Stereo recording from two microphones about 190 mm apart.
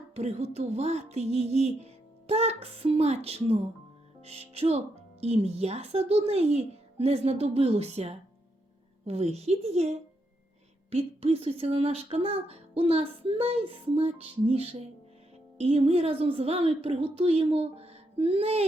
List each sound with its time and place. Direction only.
0.1 s speech: 35° right (ahead or behind)
10.9 s speech: 30° right (ahead or behind)